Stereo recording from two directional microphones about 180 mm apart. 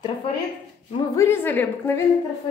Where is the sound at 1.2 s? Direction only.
10° left (ahead or behind).